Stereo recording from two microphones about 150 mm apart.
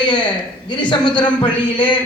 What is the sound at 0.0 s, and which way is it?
A man's voice, 30° left (ahead or behind).